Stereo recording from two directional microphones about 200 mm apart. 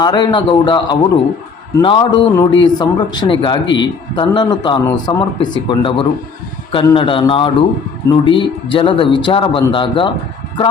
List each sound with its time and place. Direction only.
0.0 s speech: 20° left (ahead or behind)